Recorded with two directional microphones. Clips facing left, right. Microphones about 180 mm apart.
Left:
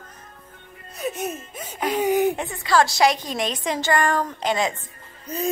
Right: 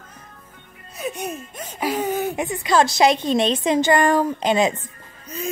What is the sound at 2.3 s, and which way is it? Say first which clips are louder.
A woman's voice: right 2 dB; 15° right (ahead or behind).